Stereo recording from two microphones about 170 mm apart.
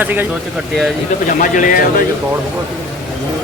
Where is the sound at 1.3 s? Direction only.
50° left (ahead or behind).